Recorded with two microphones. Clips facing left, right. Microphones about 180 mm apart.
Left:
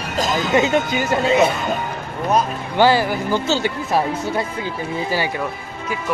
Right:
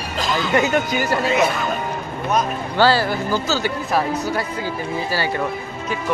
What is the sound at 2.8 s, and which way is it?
Speech, 15° left (ahead or behind).